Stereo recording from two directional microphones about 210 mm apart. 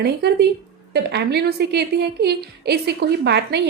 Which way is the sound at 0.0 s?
50° right (ahead or behind).